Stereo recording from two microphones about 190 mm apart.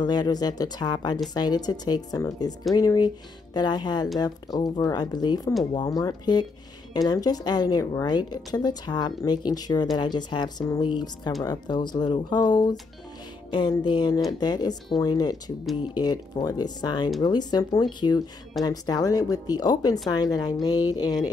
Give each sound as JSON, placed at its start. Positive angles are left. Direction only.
{"t": 0.0, "sound": "a woman's voice", "side_deg": 20}